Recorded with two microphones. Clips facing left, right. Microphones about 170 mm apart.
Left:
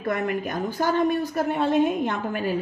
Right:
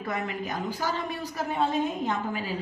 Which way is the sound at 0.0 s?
55° left (ahead or behind).